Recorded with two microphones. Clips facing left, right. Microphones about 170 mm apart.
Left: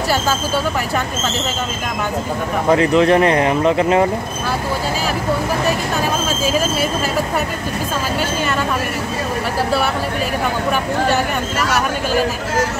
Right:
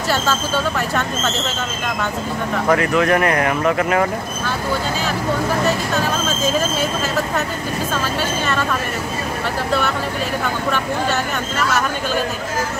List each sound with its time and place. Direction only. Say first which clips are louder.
2.7 s speech: left 4 dB; 25° left (ahead or behind)
6.2 s speech: left 1 dB; 10° left (ahead or behind)